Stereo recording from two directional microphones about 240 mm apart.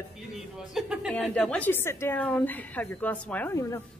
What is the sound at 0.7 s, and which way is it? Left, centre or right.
Speech, centre.